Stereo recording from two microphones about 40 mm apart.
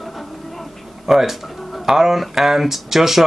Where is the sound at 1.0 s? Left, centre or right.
Centre.